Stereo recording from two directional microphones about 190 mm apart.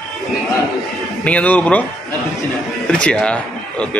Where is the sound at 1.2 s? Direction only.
5° left (ahead or behind).